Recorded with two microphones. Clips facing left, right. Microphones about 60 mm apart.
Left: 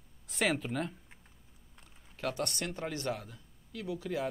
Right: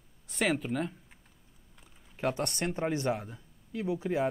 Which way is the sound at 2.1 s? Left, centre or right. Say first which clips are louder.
Right 4 dB; right.